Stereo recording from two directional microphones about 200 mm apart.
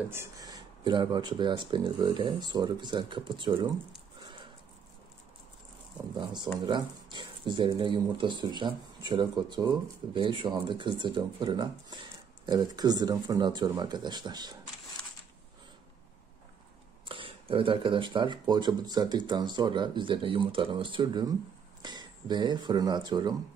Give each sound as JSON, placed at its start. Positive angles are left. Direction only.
{"t": 0.1, "sound": "speech", "side_deg": -15}
{"t": 6.1, "sound": "speech", "side_deg": -20}
{"t": 17.0, "sound": "speech", "side_deg": -25}